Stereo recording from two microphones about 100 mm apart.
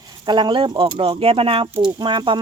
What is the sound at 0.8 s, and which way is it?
Speech, 65° right (ahead or behind).